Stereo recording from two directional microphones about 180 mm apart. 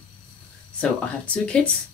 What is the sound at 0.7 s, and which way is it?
Speech, 5° left (ahead or behind).